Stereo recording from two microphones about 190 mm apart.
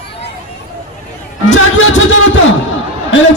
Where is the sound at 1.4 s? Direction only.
90° left.